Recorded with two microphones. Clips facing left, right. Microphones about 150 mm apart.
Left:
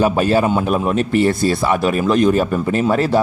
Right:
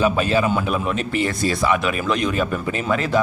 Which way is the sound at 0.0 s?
40° left (ahead or behind).